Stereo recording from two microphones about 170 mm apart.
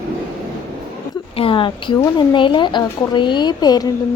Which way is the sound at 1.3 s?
30° left (ahead or behind).